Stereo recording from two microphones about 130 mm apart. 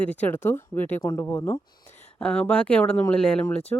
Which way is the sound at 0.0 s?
10° left (ahead or behind).